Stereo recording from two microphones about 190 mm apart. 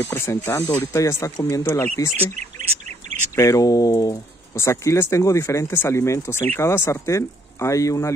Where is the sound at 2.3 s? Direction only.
40° right (ahead or behind).